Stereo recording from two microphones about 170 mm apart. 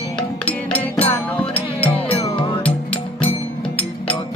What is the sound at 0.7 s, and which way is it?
Music, 10° left (ahead or behind).